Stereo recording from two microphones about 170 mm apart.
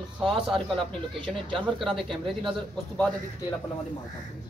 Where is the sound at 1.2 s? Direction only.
30° right (ahead or behind).